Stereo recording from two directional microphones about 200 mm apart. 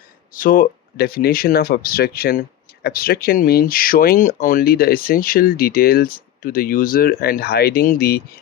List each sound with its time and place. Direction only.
0.3 s speech: 45° left (ahead or behind)